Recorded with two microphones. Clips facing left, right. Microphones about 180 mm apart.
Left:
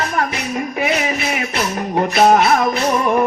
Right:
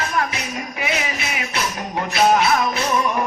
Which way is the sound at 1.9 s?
50° left (ahead or behind).